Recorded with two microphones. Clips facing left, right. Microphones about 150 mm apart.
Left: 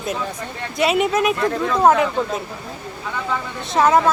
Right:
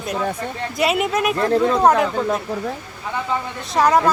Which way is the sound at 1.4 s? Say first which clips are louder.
Right 3 dB; 35° right (ahead or behind).